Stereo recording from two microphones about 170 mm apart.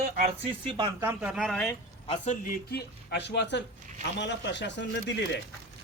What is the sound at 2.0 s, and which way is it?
Speech, 45° left (ahead or behind).